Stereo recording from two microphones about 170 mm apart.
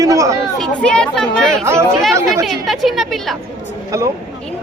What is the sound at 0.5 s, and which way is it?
Speech, 5° left (ahead or behind).